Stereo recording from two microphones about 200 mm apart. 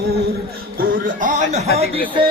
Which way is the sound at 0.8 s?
40° right (ahead or behind).